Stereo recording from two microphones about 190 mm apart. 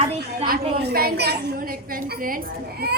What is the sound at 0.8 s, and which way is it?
Speech, 55° right (ahead or behind).